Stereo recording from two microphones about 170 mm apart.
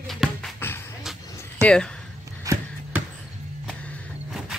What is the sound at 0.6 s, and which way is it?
Music, 15° left (ahead or behind).